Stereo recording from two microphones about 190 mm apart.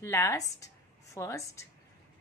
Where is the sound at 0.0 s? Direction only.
15° left (ahead or behind).